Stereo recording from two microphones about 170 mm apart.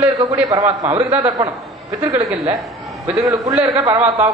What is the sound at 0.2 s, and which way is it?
A man's voice, 20° right (ahead or behind).